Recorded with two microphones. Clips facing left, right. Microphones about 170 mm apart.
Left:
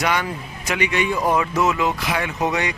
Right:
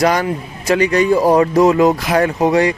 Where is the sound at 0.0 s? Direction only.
35° right (ahead or behind).